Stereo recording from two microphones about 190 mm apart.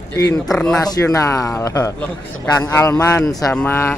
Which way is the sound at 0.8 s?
20° left (ahead or behind).